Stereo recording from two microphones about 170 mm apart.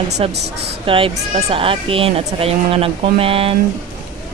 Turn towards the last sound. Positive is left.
turn(degrees=-35)  # may be behind; listen again after turning